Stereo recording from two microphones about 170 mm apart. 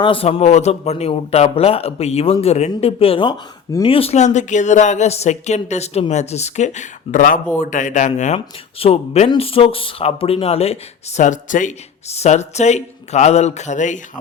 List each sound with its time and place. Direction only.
0.0 s speech: 35° left (ahead or behind)
11.2 s speech: 50° left (ahead or behind)